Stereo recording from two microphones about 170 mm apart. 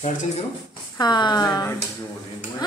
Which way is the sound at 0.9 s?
25° left (ahead or behind).